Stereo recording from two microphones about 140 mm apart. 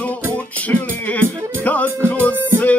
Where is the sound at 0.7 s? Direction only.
10° left (ahead or behind).